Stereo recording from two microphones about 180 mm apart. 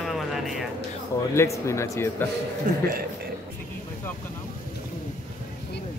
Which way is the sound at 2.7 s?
50° right (ahead or behind).